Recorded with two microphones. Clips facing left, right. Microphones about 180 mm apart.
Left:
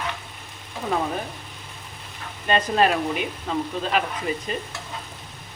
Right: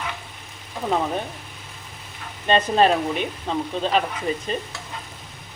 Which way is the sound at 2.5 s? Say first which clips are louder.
Right 2 dB; 30° right (ahead or behind).